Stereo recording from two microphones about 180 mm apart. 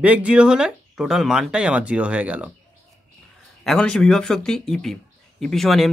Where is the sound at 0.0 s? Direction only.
5° right (ahead or behind).